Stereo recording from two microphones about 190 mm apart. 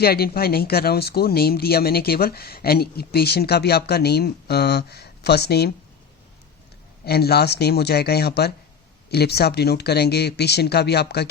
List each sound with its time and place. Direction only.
0.0 s speech: 55° left (ahead or behind)
7.0 s speech: 55° left (ahead or behind)